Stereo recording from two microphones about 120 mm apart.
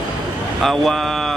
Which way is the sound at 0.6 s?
Centre (ahead or behind).